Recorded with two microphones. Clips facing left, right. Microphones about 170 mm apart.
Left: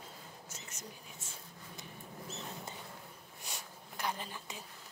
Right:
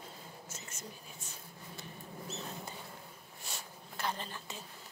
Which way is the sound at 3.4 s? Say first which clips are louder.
Right 1 dB; 15° left (ahead or behind).